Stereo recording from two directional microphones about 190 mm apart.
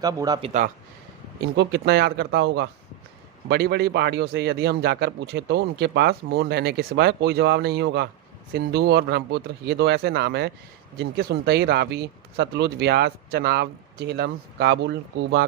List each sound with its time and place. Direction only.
0.0 s speech: 20° right (ahead or behind)
0.4 s speech: 40° right (ahead or behind)
1.5 s speech: 55° right (ahead or behind)